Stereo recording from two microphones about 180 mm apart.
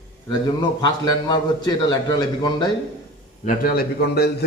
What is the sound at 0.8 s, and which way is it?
Speech, 25° left (ahead or behind).